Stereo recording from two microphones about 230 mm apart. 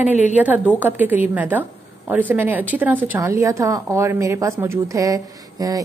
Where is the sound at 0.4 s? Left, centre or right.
Centre.